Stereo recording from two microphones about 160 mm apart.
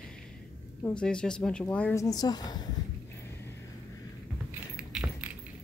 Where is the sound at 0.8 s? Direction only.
5° left (ahead or behind).